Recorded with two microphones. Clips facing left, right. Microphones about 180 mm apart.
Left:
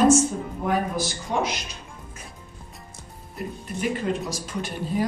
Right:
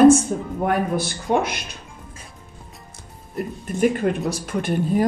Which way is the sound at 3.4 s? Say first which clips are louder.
Right 5 dB; centre (ahead or behind).